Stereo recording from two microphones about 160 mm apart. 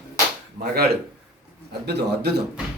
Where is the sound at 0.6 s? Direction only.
90° right.